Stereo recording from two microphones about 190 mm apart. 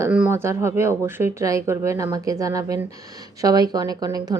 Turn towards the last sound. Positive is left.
turn(degrees=-20)  # may be behind; listen again after turning